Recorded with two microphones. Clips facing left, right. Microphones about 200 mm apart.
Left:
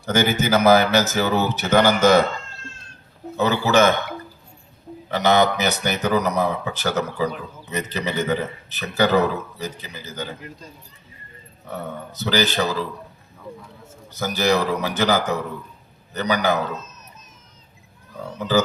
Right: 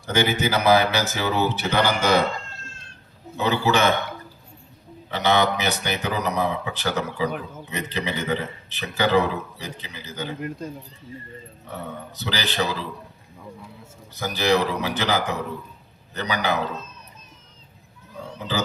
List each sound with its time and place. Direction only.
0.0 s speech: 45° left (ahead or behind)
3.3 s speech: 45° left (ahead or behind)
5.1 s a man's voice: 40° left (ahead or behind)
12.2 s a man's voice: 40° left (ahead or behind)
14.2 s speech: 40° left (ahead or behind)
18.3 s speech: 45° left (ahead or behind)